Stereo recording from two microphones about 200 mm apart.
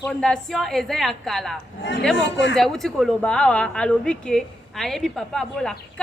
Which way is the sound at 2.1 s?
65° left (ahead or behind).